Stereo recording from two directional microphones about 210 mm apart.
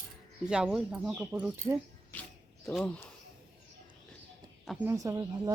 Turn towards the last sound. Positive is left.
turn(degrees=-15)  # may be behind; listen again after turning